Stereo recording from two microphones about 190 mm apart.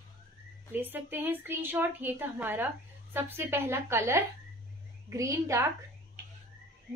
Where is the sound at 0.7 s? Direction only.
10° right (ahead or behind).